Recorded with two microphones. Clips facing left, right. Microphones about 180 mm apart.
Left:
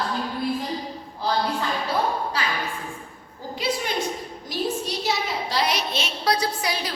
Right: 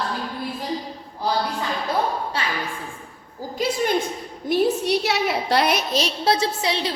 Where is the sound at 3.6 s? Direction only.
45° right (ahead or behind).